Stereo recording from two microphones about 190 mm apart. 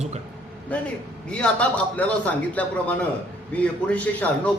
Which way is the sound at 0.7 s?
5° left (ahead or behind).